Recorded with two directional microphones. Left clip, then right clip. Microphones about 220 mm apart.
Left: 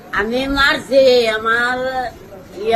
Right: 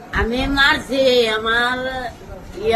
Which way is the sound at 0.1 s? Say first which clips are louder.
Left 2 dB; 15° right (ahead or behind).